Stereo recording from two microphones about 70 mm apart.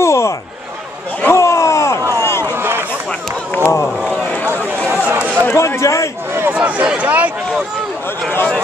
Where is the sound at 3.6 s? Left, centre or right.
Left.